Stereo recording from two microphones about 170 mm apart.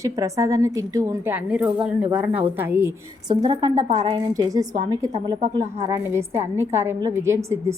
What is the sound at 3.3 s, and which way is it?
Speech, 25° right (ahead or behind).